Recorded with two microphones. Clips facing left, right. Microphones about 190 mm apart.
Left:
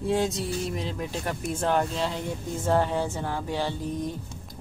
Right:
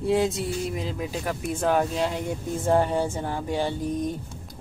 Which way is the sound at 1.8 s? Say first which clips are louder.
Right 2 dB; 15° right (ahead or behind).